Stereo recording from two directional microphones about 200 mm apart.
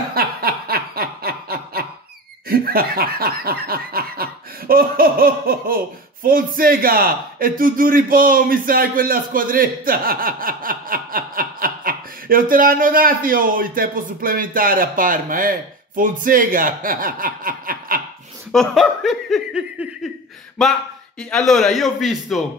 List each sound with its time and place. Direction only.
0.1 s snicker: 50° right (ahead or behind)
2.4 s speech: 50° right (ahead or behind)
18.5 s speech: centre (ahead or behind)
21.2 s speech: centre (ahead or behind)